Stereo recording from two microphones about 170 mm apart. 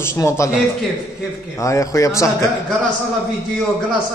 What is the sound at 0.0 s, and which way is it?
Speech, 15° left (ahead or behind).